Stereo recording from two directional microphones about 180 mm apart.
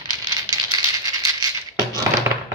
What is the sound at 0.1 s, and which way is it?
Rattle, 20° right (ahead or behind).